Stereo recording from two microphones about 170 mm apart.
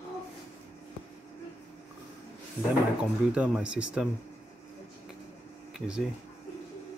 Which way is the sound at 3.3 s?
5° right (ahead or behind).